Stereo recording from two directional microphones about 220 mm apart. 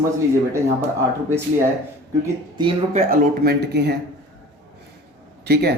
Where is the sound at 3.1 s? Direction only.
45° right (ahead or behind).